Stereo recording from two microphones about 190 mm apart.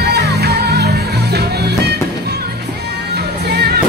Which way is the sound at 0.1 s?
60° right (ahead or behind).